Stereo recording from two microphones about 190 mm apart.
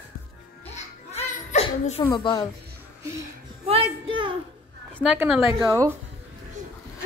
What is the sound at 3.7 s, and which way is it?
Speech, 30° right (ahead or behind).